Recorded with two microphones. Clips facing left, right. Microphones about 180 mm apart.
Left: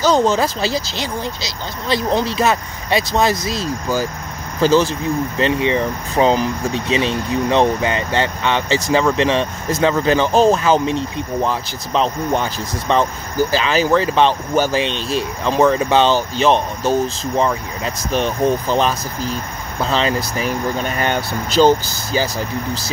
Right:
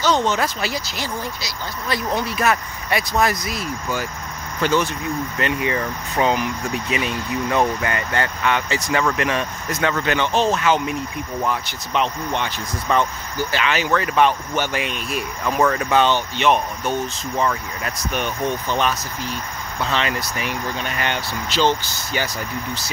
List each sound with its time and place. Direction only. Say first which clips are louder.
0.0 s speech: left 5 dB; 35° left (ahead or behind)